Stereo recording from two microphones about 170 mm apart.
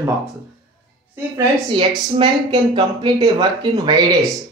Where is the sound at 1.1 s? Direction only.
15° right (ahead or behind).